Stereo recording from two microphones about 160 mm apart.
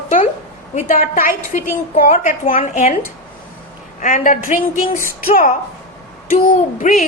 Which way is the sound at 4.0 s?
55° left (ahead or behind).